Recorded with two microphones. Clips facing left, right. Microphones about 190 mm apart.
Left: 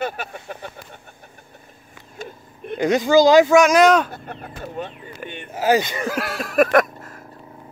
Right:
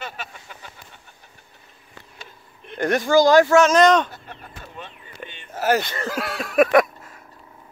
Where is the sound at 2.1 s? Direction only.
50° left (ahead or behind).